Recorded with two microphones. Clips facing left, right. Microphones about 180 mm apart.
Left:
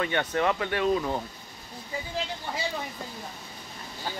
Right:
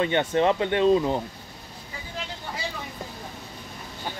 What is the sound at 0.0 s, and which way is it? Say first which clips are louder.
Speech: right 5 dB; 25° right (ahead or behind).